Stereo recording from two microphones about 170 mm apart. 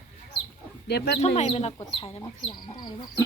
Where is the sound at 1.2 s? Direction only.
40° left (ahead or behind).